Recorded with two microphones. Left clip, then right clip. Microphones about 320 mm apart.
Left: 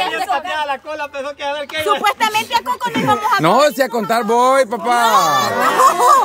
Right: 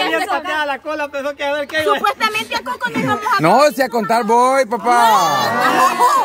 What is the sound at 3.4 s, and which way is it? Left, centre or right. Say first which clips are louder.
Speech: right 4 dB; centre.